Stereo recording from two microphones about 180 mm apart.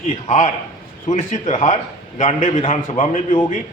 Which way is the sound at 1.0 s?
40° left (ahead or behind).